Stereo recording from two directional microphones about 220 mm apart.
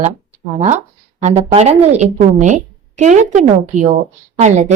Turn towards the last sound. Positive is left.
turn(degrees=-30)  # may be behind; listen again after turning